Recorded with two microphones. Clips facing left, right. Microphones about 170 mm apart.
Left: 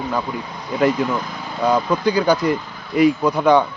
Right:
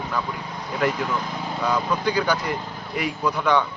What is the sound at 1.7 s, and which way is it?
A man's voice, 35° left (ahead or behind).